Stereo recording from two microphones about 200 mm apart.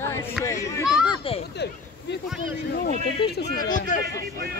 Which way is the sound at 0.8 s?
5° right (ahead or behind).